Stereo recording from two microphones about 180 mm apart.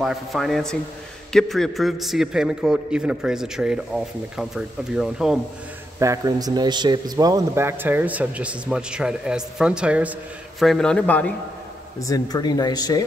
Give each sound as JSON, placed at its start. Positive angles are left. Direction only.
{"t": 0.0, "sound": "a man's voice", "side_deg": 0}
{"t": 5.9, "sound": "a man's voice", "side_deg": -15}
{"t": 12.0, "sound": "speech", "side_deg": 20}